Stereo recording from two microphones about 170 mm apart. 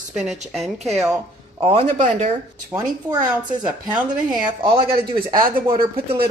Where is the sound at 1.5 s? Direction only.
35° right (ahead or behind).